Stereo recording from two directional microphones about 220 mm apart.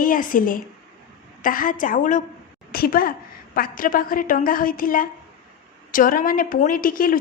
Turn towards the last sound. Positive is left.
turn(degrees=40)  # may be behind; listen again after turning